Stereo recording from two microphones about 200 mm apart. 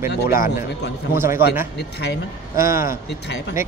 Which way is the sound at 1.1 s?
10° right (ahead or behind).